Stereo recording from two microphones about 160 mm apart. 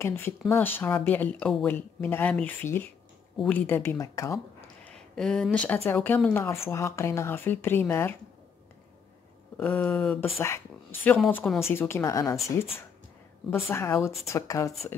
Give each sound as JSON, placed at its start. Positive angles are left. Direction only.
{"t": 0.0, "sound": "speech", "side_deg": 15}
{"t": 9.6, "sound": "speech", "side_deg": 10}
{"t": 13.5, "sound": "speech", "side_deg": 15}